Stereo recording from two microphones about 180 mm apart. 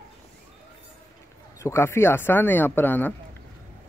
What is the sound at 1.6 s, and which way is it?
A man's voice, 15° left (ahead or behind).